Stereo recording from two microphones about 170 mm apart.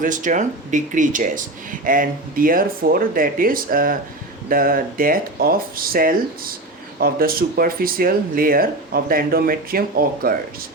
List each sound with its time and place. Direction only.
0.0 s speech: 50° right (ahead or behind)